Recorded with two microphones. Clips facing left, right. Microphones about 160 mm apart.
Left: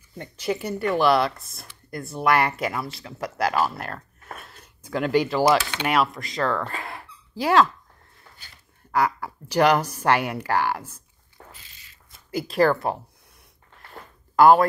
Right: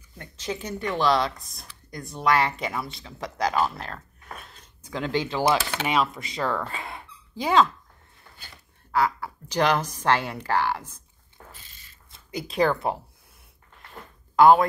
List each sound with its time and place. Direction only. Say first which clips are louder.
0.2 s speech: left 5 dB; 10° left (ahead or behind)
8.9 s speech: left 1 dB; 15° left (ahead or behind)
11.6 s a sound: even; 45° right (ahead or behind)
12.3 s speech: left 3 dB; centre (ahead or behind)
14.3 s speech: left 1 dB; 5° left (ahead or behind)